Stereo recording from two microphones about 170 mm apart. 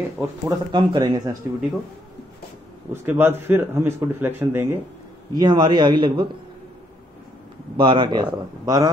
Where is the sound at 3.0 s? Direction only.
10° right (ahead or behind).